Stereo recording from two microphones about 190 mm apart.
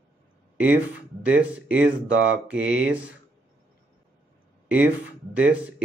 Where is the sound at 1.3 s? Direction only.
10° right (ahead or behind).